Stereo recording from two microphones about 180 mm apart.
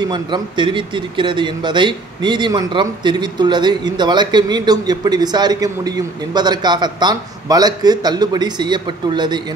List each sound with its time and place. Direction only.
0.1 s speech: 25° right (ahead or behind)